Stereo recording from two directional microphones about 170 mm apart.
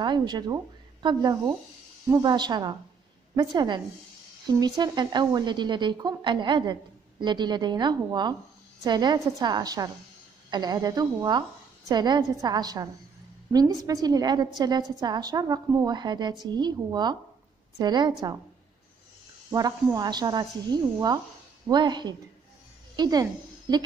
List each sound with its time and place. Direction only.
0.0 s speech: 25° right (ahead or behind)
19.5 s speech: 20° right (ahead or behind)
21.6 s a woman's voice: 25° right (ahead or behind)